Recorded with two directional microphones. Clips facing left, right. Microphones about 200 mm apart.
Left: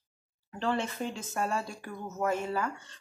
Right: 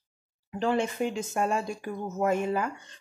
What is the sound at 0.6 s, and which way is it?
Speech, 15° right (ahead or behind).